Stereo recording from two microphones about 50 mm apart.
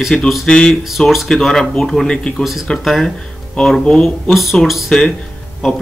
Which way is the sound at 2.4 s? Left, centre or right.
Centre.